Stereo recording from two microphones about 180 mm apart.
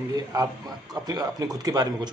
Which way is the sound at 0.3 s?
20° right (ahead or behind).